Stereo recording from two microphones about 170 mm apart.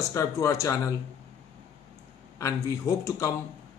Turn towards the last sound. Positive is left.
turn(degrees=15)  # may be behind; listen again after turning